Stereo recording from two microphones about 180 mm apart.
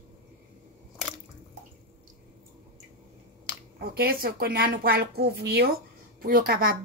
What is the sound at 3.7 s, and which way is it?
A woman's voice, 55° right (ahead or behind).